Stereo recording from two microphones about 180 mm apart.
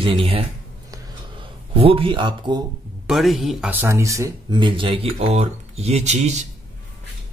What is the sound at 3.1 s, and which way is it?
Speech, centre (ahead or behind).